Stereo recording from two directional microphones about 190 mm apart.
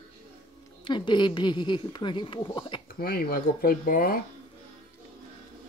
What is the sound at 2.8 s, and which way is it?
Speech, 50° left (ahead or behind).